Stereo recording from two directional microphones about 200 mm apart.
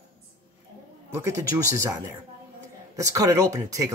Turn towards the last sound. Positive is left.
turn(degrees=-15)  # may be behind; listen again after turning